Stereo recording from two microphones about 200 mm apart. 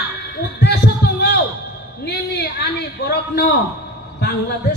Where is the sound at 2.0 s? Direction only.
55° left (ahead or behind).